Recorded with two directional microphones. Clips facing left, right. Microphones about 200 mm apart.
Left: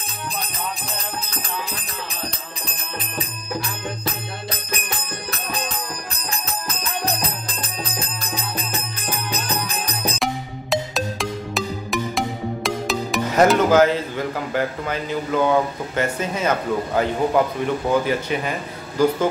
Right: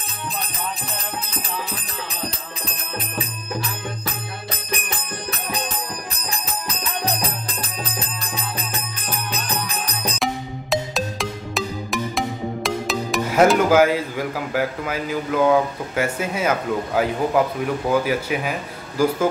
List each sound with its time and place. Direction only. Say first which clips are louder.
6.3 s music: even; 15° right (ahead or behind)
9.5 s music: left 1 dB; 10° left (ahead or behind); by 19.2 s 5° right (ahead or behind)